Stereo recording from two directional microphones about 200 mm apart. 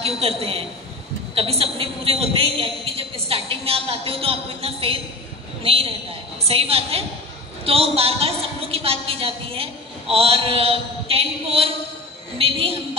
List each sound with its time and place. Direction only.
0.0 s a woman's voice: 30° right (ahead or behind)